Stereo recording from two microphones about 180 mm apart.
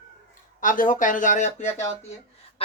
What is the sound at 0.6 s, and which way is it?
A woman's voice, 50° left (ahead or behind).